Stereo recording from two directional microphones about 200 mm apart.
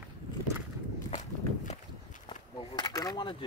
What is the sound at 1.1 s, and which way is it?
Walk, 35° left (ahead or behind).